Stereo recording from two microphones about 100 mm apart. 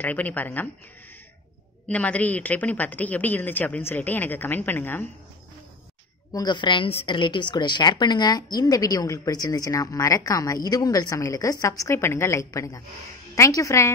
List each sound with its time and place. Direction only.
0.0 s a woman's voice: 15° left (ahead or behind)
1.9 s a woman's voice: 15° left (ahead or behind)
6.3 s a woman's voice: 45° left (ahead or behind); by 13.9 s 30° left (ahead or behind)